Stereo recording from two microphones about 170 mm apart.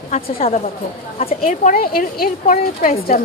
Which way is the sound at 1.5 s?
50° left (ahead or behind).